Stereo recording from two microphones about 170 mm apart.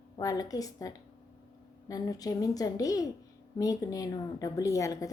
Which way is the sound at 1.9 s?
20° left (ahead or behind).